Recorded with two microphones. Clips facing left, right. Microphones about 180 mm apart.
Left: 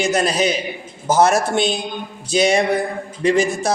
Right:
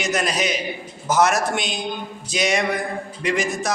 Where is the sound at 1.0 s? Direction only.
30° left (ahead or behind).